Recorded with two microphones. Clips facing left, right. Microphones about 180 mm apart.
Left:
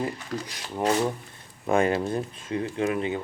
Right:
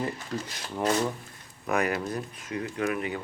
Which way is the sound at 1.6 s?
25° left (ahead or behind).